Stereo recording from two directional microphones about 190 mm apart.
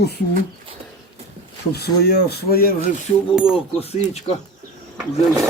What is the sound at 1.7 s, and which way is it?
Speech, 55° left (ahead or behind).